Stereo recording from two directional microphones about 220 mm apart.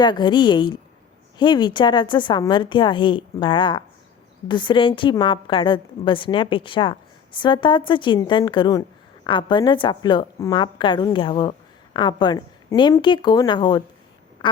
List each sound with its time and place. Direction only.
0.0 s a woman's voice: 20° left (ahead or behind)
14.4 s quack: 20° left (ahead or behind)